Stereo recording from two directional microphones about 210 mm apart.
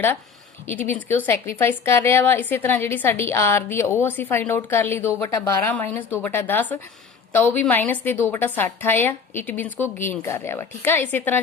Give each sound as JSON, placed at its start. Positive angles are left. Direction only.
{"t": 0.7, "sound": "speech", "side_deg": 10}